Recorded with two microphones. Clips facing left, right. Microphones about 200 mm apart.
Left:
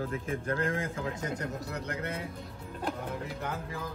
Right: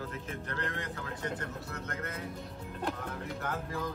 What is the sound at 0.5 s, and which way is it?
Speech, 45° left (ahead or behind).